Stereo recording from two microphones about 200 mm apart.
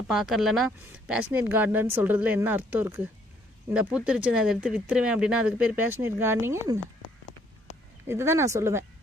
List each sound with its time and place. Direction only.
0.1 s speech: centre (ahead or behind)
8.0 s speech: 15° right (ahead or behind)